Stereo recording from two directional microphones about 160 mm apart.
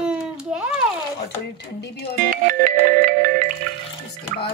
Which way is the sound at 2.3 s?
60° right (ahead or behind).